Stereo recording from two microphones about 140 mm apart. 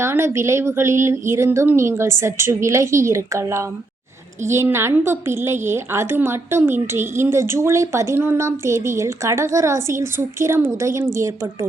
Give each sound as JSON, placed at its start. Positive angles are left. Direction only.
{"t": 0.0, "sound": "a woman's voice", "side_deg": -20}